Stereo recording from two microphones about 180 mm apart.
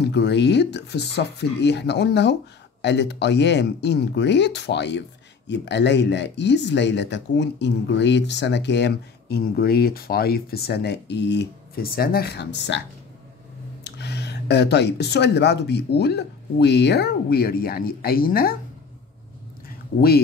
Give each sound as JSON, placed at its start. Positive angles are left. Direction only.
{"t": 0.0, "sound": "speech", "side_deg": 70}
{"t": 13.8, "sound": "speech", "side_deg": 70}